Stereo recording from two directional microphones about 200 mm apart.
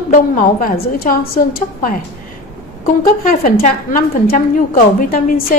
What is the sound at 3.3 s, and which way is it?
A woman's voice, 45° left (ahead or behind).